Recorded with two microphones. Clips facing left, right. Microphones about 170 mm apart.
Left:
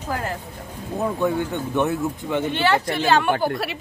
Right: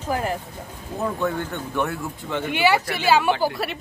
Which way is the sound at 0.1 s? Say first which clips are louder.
Right 3 dB; 15° right (ahead or behind).